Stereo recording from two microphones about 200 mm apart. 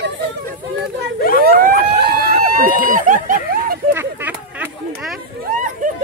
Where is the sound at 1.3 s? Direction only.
45° right (ahead or behind).